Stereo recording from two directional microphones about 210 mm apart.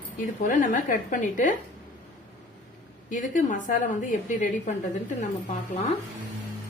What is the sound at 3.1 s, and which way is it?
A woman's voice, 40° left (ahead or behind).